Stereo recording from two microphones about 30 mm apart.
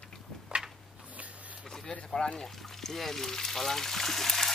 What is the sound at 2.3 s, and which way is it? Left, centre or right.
Speech, centre.